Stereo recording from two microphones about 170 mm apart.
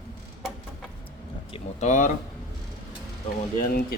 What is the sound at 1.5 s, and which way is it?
Speech, 45° left (ahead or behind).